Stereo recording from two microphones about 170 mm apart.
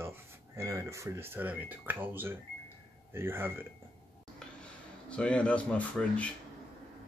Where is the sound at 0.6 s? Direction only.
20° right (ahead or behind).